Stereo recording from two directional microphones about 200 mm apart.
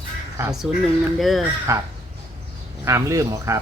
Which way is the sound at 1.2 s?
Centre (ahead or behind).